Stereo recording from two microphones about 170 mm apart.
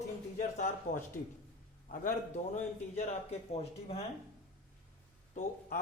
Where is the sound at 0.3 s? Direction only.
45° left (ahead or behind).